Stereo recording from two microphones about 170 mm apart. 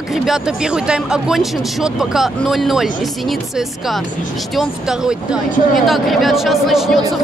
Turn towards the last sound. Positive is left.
turn(degrees=0)  # may be behind; listen again after turning